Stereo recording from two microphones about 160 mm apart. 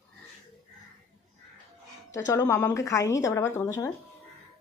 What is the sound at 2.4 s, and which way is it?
A woman's voice, 15° left (ahead or behind).